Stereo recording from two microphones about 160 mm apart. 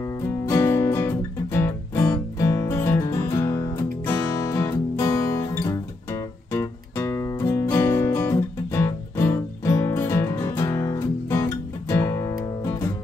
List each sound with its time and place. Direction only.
0.5 s music: 15° left (ahead or behind)